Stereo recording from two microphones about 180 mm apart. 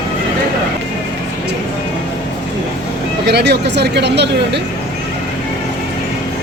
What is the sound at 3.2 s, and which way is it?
Speech, 65° right (ahead or behind).